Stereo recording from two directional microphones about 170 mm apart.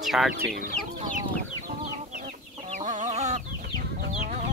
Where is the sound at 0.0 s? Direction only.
Centre (ahead or behind).